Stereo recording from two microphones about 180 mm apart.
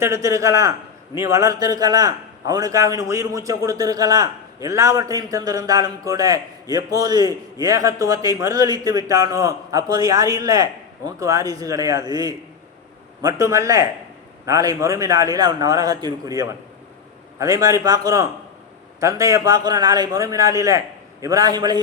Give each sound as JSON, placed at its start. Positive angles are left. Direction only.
{"t": 0.0, "sound": "a man's voice", "side_deg": -15}